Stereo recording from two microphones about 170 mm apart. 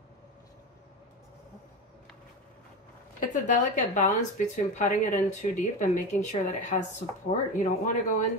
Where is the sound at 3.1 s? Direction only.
45° left (ahead or behind).